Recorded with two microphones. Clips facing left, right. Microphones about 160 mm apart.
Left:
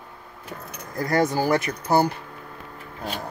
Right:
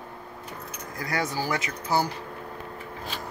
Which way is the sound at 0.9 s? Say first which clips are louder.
Left 8 dB; 50° left (ahead or behind).